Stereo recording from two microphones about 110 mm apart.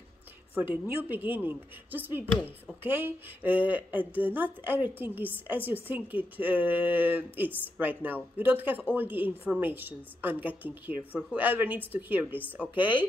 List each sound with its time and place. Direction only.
0.6 s speech: 15° right (ahead or behind)